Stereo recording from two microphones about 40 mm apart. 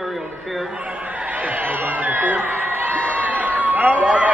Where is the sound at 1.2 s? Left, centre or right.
Right.